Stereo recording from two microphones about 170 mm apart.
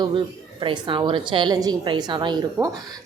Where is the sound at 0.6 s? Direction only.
30° right (ahead or behind).